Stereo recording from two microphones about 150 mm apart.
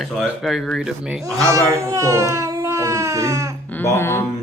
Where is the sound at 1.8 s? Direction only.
20° right (ahead or behind).